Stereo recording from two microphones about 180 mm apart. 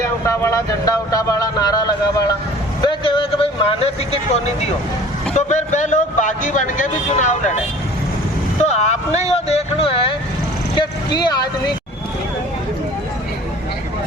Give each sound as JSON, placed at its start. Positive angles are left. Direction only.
{"t": 0.0, "sound": "speech", "side_deg": 15}
{"t": 2.8, "sound": "vehicle", "side_deg": 30}
{"t": 5.3, "sound": "a man's voice", "side_deg": 40}
{"t": 8.6, "sound": "speech", "side_deg": 40}